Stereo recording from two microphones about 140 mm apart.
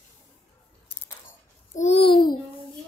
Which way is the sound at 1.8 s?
45° left (ahead or behind).